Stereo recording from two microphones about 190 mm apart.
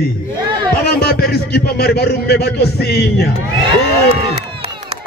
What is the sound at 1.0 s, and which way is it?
A man's voice, 60° left (ahead or behind).